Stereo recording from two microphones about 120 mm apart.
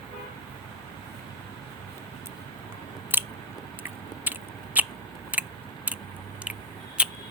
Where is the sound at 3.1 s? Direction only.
15° right (ahead or behind).